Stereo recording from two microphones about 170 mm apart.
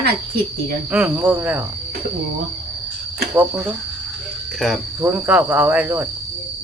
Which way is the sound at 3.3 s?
10° right (ahead or behind).